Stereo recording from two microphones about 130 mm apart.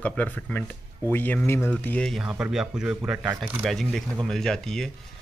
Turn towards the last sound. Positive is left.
turn(degrees=5)  # may be behind; listen again after turning